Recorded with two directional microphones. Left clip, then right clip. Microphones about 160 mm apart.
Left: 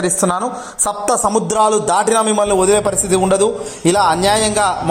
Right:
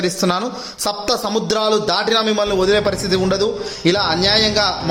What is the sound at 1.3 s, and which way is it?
A man's voice, centre (ahead or behind).